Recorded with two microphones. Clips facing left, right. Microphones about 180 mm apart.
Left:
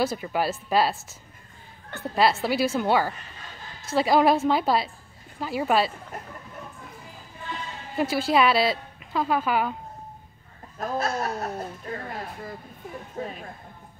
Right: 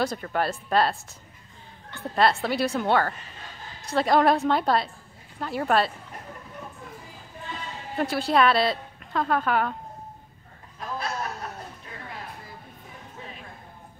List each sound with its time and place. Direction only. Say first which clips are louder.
0.0 s a woman's voice: left 1 dB; 5° left (ahead or behind)
2.1 s a woman's voice: left 1 dB; 5° left (ahead or behind)
7.9 s a woman's voice: left 1 dB; centre (ahead or behind)
10.8 s a sound: left 5 dB; 45° left (ahead or behind)
13.2 s music: left 10 dB; 45° left (ahead or behind)